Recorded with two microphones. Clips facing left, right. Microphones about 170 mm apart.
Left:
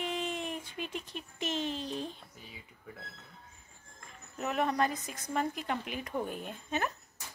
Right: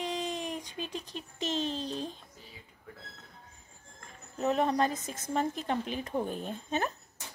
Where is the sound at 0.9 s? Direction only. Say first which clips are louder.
Right 1 dB; 20° right (ahead or behind).